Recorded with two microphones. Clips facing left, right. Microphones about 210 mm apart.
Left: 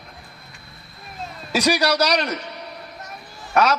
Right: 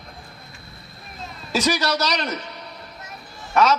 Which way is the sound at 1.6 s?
20° right (ahead or behind).